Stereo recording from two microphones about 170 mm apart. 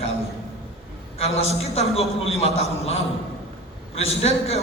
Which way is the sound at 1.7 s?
35° left (ahead or behind).